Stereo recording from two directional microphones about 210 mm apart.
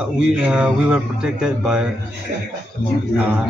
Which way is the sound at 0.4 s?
5° right (ahead or behind).